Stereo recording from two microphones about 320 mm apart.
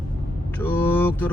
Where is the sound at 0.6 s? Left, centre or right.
Centre.